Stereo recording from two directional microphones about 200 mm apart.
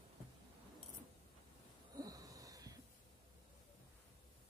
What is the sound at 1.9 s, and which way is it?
Wheeze, 15° right (ahead or behind).